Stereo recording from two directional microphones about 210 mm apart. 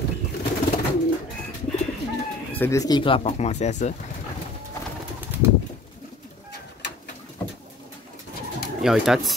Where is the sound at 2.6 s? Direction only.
15° left (ahead or behind); by 4.0 s 35° left (ahead or behind).